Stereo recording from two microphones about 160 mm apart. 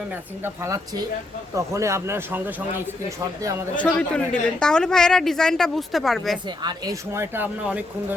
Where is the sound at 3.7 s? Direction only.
5° left (ahead or behind).